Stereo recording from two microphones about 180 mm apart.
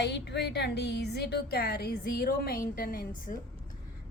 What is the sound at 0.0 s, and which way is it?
A woman's voice, 70° left (ahead or behind).